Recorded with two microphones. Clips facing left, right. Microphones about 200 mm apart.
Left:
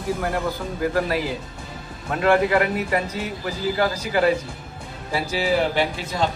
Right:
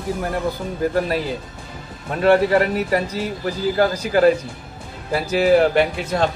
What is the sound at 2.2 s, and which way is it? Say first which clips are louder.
Speech: right 3 dB; 30° right (ahead or behind).